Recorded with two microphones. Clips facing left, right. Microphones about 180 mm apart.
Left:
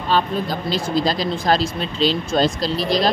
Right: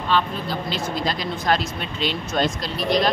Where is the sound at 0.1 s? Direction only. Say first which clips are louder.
Left 3 dB; 40° left (ahead or behind).